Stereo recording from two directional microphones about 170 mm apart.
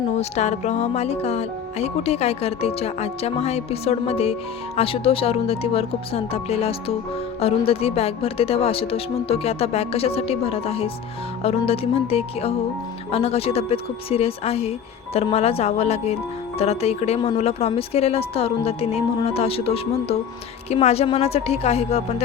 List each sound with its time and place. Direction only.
0.1 s speech: 40° left (ahead or behind)